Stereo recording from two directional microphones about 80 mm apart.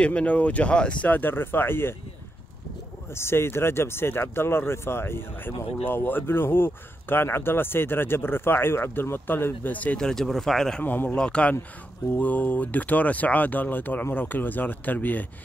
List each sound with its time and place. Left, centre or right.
0.0 s speech: centre
3.1 s speech: left
9.9 s speech: centre
10.8 s speech: left
11.1 s speech: centre